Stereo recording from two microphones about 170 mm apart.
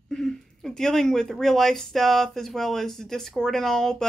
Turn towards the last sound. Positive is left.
turn(degrees=5)  # may be behind; listen again after turning